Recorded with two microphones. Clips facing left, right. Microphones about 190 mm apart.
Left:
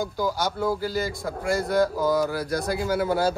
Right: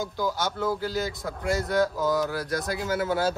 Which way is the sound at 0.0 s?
5° left (ahead or behind).